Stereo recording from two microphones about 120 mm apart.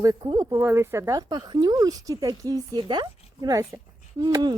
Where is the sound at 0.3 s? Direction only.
20° right (ahead or behind).